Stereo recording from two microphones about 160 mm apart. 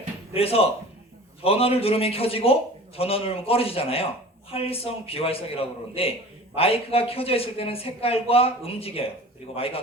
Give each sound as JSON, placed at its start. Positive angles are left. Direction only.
{"t": 0.3, "sound": "a man's voice", "side_deg": 35}